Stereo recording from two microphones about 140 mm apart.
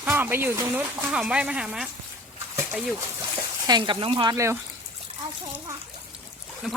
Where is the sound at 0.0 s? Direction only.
15° right (ahead or behind).